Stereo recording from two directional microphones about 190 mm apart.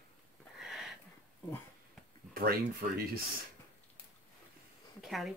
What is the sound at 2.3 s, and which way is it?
Speech, 50° right (ahead or behind).